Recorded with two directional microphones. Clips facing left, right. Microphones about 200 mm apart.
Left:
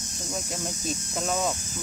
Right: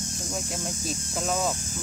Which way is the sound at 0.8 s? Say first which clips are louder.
Even; centre (ahead or behind).